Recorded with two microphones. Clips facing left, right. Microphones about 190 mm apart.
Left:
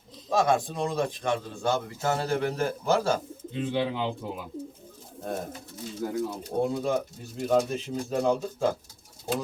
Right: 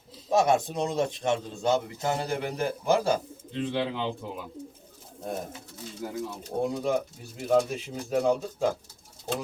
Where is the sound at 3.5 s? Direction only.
5° left (ahead or behind).